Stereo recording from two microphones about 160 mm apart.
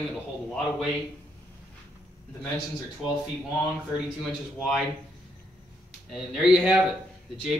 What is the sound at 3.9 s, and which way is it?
Speech, centre (ahead or behind).